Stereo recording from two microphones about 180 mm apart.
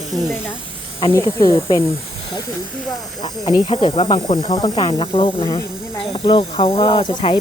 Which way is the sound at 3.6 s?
30° left (ahead or behind).